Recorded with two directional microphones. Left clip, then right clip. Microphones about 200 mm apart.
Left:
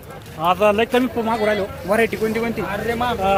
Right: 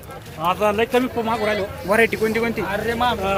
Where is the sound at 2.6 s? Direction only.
50° right (ahead or behind).